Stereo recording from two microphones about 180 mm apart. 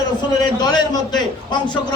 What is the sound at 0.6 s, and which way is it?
A man's voice, 25° left (ahead or behind).